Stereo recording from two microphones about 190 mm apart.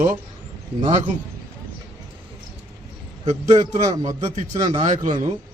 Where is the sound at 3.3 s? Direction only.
20° right (ahead or behind).